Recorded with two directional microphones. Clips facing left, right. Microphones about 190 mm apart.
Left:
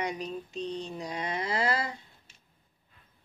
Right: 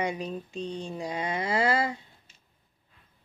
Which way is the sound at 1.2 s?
30° right (ahead or behind).